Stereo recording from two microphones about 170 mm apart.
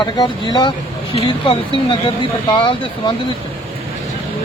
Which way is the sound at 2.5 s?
25° left (ahead or behind).